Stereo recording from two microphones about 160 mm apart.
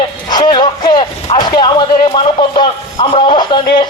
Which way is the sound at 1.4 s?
25° left (ahead or behind).